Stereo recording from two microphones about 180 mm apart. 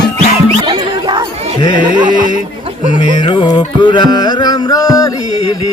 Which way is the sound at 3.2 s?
25° left (ahead or behind).